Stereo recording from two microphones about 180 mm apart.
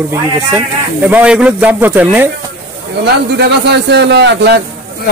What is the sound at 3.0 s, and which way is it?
A man's voice, 65° right (ahead or behind).